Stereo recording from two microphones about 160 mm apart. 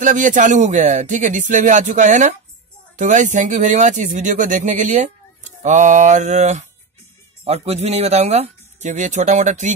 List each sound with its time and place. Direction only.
0.0 s speech: 55° right (ahead or behind)